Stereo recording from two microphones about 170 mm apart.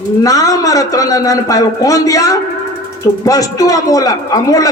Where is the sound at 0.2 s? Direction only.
20° left (ahead or behind).